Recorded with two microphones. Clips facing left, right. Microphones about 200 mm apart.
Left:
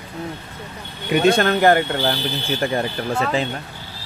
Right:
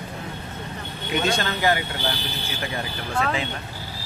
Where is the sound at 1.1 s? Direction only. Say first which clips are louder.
Left 8 dB; 55° left (ahead or behind).